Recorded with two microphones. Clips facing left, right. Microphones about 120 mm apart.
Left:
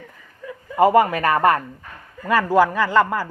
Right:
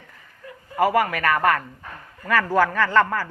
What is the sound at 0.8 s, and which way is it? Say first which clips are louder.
Speech: left 5 dB; 25° left (ahead or behind).